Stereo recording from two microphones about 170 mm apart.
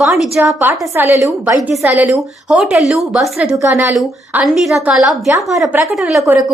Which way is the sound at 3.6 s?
15° right (ahead or behind).